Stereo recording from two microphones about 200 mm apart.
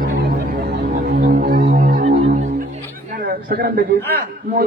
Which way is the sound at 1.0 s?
50° right (ahead or behind).